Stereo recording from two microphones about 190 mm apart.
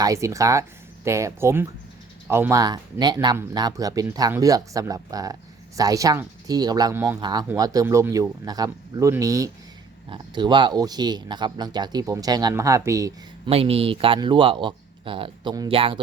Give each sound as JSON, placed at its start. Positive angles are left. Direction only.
{"t": 0.0, "sound": "speech", "side_deg": -15}
{"t": 13.5, "sound": "speech", "side_deg": -30}